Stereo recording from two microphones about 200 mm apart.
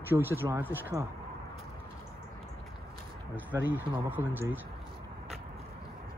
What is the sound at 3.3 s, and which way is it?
Speech, 10° right (ahead or behind).